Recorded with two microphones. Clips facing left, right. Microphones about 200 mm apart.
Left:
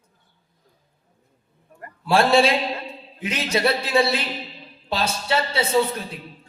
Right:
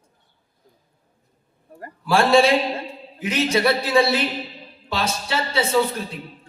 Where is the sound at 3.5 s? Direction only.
30° left (ahead or behind).